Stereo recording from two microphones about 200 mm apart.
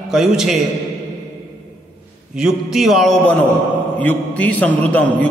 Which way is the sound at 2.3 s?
Centre (ahead or behind).